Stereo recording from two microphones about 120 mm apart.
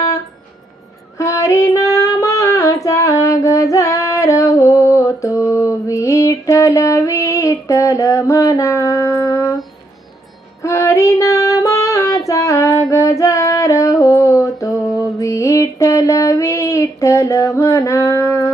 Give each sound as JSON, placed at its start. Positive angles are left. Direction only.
{"t": 1.2, "sound": "female singing", "side_deg": 25}
{"t": 10.6, "sound": "child singing", "side_deg": 25}